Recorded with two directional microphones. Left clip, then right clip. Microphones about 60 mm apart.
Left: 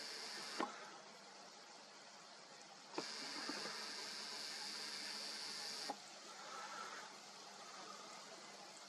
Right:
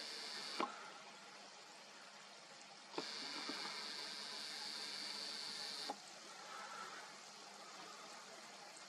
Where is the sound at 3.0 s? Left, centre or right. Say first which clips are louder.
Right 1 dB; right.